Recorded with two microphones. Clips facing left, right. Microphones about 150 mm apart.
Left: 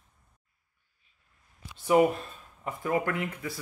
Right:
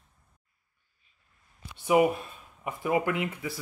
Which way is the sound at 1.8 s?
10° right (ahead or behind).